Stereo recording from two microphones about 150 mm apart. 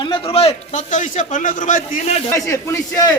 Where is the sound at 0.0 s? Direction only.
35° left (ahead or behind).